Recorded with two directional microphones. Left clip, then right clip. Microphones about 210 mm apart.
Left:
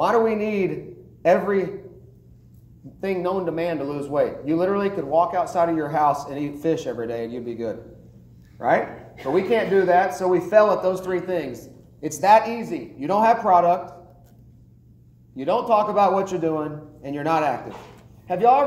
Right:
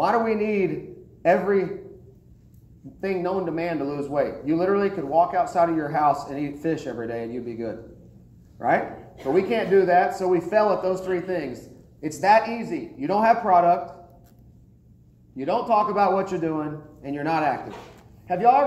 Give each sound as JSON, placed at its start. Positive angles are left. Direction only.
{"t": 0.0, "sound": "speech", "side_deg": 35}
{"t": 3.0, "sound": "speech", "side_deg": 35}
{"t": 15.3, "sound": "speech", "side_deg": 35}